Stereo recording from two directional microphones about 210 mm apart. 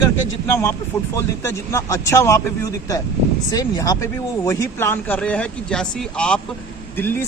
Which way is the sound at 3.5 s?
15° left (ahead or behind).